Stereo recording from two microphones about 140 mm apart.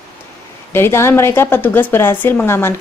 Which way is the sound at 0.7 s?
20° left (ahead or behind).